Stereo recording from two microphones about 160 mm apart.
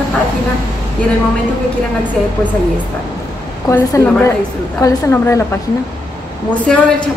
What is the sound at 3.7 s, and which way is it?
A woman's voice, 15° left (ahead or behind).